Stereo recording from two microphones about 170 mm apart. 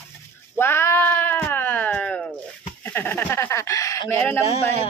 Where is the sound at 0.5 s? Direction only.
15° left (ahead or behind).